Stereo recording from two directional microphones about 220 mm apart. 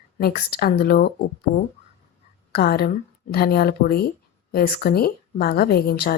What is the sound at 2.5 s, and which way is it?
Speech, 45° left (ahead or behind).